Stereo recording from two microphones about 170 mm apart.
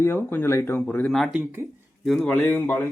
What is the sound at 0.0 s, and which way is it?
Speech, 15° left (ahead or behind).